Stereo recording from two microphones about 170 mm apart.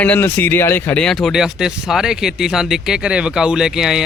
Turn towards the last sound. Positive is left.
turn(degrees=-5)  # may be behind; listen again after turning